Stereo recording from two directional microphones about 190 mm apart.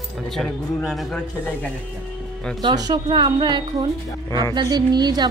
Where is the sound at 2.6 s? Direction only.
20° right (ahead or behind).